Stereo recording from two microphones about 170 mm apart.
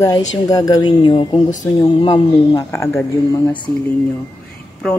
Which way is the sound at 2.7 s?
15° left (ahead or behind).